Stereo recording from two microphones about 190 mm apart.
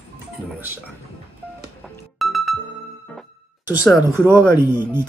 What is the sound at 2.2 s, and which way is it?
Music, centre (ahead or behind).